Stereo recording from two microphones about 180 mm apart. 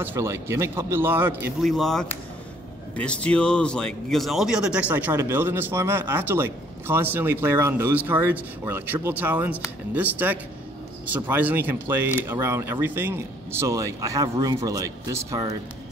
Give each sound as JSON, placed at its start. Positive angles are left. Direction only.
{"t": 0.0, "sound": "speech", "side_deg": -15}
{"t": 1.6, "sound": "speech", "side_deg": 0}